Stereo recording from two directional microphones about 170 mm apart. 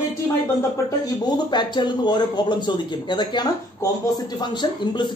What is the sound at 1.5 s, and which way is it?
Speech, 25° left (ahead or behind).